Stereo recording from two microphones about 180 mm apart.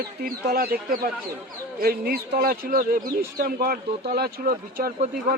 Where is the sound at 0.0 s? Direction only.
55° right (ahead or behind).